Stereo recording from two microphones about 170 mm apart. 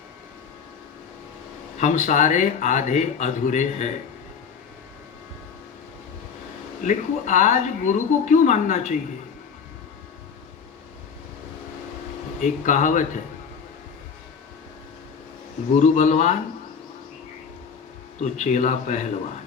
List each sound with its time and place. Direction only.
1.8 s speech: 50° left (ahead or behind)
6.8 s speech: 45° left (ahead or behind)
12.4 s speech: 50° left (ahead or behind)
15.8 s speech: 45° left (ahead or behind)
18.2 s speech: 45° left (ahead or behind)